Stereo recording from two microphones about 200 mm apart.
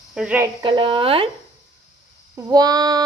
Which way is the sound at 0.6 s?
25° right (ahead or behind).